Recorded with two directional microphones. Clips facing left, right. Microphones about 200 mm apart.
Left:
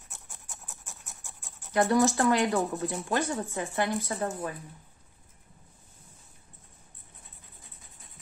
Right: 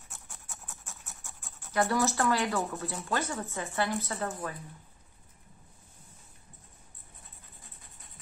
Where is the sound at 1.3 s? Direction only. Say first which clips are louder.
Left 5 dB; 20° left (ahead or behind).